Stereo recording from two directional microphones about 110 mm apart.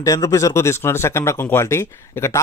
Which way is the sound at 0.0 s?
30° left (ahead or behind).